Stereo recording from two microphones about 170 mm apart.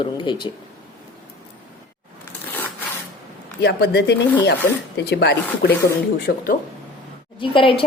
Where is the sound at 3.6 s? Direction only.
75° left (ahead or behind).